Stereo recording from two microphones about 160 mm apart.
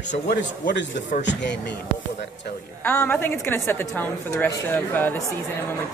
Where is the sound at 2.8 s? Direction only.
10° left (ahead or behind).